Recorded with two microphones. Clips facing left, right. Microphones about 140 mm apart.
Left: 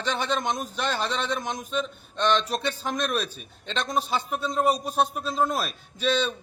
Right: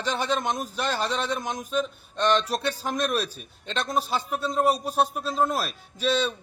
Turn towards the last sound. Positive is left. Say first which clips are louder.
# even
turn(degrees=-5)  # may be behind; listen again after turning